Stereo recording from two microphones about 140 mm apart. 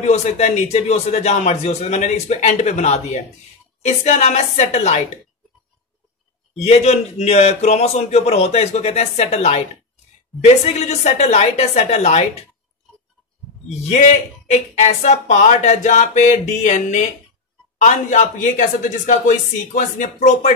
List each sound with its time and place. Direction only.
0.0 s speech: 50° left (ahead or behind)
6.5 s speech: 50° left (ahead or behind)
13.7 s speech: 50° left (ahead or behind)